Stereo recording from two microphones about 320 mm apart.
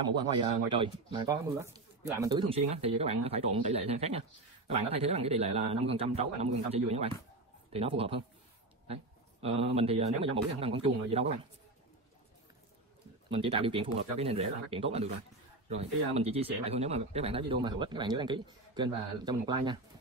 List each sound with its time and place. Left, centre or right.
0.2 s a man's voice: centre
13.3 s speech: centre